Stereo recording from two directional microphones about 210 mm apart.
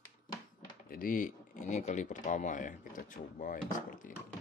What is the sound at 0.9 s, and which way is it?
Speech, 40° left (ahead or behind).